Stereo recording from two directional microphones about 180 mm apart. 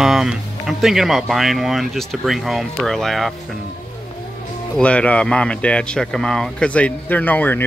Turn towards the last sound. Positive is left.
turn(degrees=10)  # may be behind; listen again after turning